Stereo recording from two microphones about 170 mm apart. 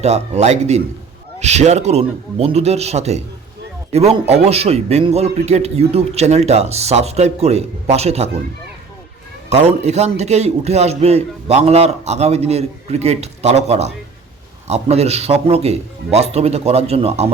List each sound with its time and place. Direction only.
0.0 s a man's voice: 40° right (ahead or behind)
9.5 s a man's voice: 40° right (ahead or behind)